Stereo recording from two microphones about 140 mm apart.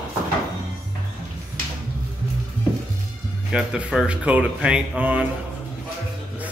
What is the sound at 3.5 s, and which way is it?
Speech, 5° right (ahead or behind).